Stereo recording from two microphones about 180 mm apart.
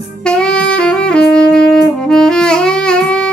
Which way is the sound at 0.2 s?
5° left (ahead or behind).